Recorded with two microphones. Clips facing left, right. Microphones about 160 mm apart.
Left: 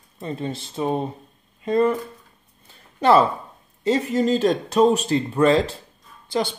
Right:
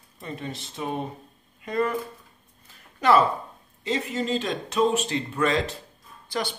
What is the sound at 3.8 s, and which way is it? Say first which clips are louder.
Speech: left 7 dB; 45° left (ahead or behind).